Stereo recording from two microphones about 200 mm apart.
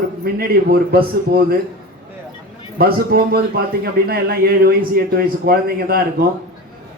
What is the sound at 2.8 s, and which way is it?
Speech, 50° right (ahead or behind).